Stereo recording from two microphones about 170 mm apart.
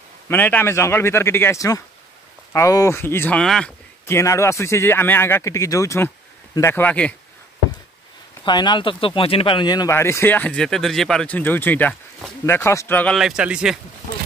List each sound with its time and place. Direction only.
0.3 s speech: 10° left (ahead or behind)
4.0 s speech: 15° left (ahead or behind)
8.5 s speech: 25° left (ahead or behind); by 13.2 s 10° left (ahead or behind)
13.2 s a man's voice: 5° right (ahead or behind)